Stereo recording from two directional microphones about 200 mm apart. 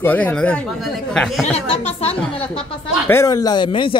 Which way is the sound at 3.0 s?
15° left (ahead or behind).